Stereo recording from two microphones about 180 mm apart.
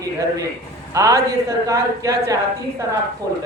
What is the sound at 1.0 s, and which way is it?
Speech, 15° right (ahead or behind).